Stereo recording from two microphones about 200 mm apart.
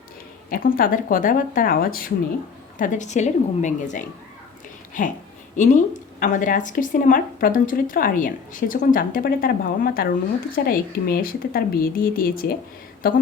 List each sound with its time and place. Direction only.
0.5 s a woman's voice: 45° left (ahead or behind)
5.5 s a woman's voice: 35° left (ahead or behind)